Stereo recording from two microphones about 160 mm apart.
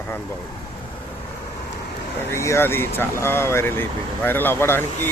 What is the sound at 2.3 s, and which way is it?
Speech, 15° left (ahead or behind).